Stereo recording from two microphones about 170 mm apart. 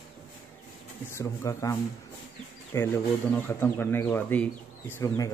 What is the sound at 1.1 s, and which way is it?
Speech, 15° left (ahead or behind).